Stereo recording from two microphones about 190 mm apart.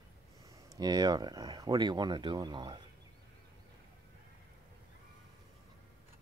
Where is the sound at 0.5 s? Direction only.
20° right (ahead or behind).